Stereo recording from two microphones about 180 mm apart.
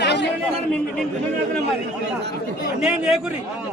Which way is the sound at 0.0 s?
70° left (ahead or behind).